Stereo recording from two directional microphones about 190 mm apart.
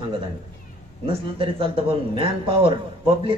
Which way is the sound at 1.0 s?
25° right (ahead or behind).